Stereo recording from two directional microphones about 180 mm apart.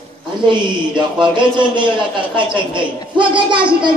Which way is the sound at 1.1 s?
25° right (ahead or behind).